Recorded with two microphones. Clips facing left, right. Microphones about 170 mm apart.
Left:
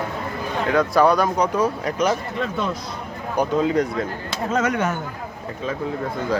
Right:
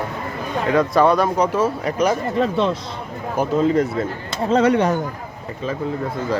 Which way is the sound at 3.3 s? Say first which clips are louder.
Right 2 dB; 5° right (ahead or behind).